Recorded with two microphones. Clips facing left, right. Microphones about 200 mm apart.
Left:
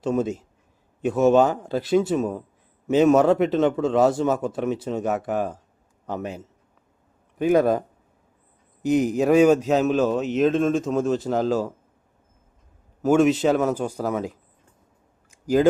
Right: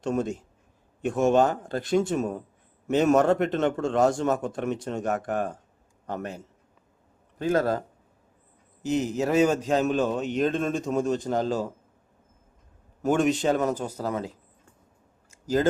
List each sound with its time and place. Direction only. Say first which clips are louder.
0.0 s a man's voice: left 4 dB; 5° left (ahead or behind)
1.6 s a man's voice: left 4 dB; 5° left (ahead or behind)
13.0 s a man's voice: left 5 dB; 5° left (ahead or behind)
15.3 s a sound: left 5 dB; 15° left (ahead or behind)